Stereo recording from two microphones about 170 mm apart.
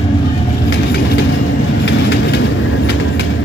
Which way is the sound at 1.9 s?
90° left.